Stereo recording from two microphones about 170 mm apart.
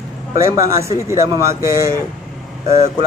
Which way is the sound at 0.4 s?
15° right (ahead or behind).